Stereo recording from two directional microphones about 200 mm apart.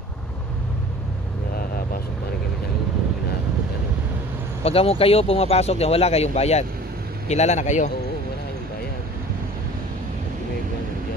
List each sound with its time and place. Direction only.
4.6 s speech: 30° left (ahead or behind)